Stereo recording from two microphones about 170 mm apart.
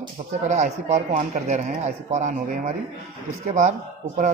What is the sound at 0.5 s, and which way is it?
A man's voice, 40° right (ahead or behind).